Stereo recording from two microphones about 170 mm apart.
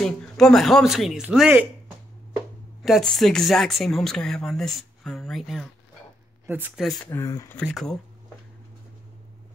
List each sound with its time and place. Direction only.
0.0 s speech: 5° left (ahead or behind)
2.8 s speech: centre (ahead or behind)
6.4 s speech: 10° right (ahead or behind)
7.1 s speech: 20° left (ahead or behind)
7.5 s speech: centre (ahead or behind)